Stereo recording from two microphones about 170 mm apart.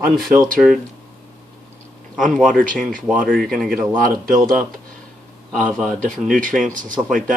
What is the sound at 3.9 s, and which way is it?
Speech, 55° right (ahead or behind).